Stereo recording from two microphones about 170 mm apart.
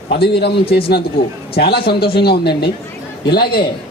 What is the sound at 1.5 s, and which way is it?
A man's voice, 70° left (ahead or behind).